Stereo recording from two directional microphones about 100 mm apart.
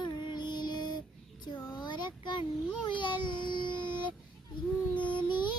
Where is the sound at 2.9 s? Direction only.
55° left (ahead or behind).